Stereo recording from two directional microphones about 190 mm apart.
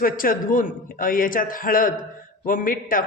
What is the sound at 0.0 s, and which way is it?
A man's voice, 45° left (ahead or behind).